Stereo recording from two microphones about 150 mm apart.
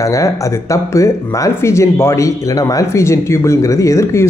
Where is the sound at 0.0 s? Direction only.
20° left (ahead or behind).